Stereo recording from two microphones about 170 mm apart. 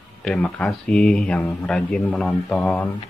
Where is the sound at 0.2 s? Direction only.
5° left (ahead or behind).